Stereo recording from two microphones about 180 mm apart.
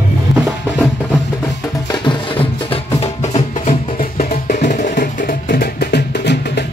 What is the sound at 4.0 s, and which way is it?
Music, 50° left (ahead or behind).